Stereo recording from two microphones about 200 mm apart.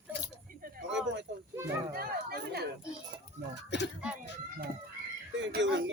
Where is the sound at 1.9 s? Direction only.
50° right (ahead or behind).